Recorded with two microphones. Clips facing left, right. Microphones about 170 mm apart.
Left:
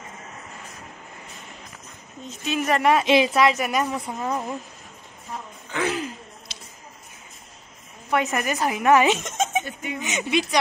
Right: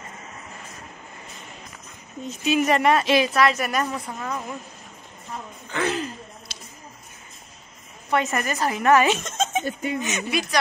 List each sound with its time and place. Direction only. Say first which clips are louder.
2.4 s speech: right 2 dB; 5° right (ahead or behind)
3.0 s speech: left 1 dB; 20° left (ahead or behind)
5.7 s a sound: even; 10° left (ahead or behind)
8.1 s a woman's voice: even; centre (ahead or behind)
8.4 s speech: even; 15° left (ahead or behind)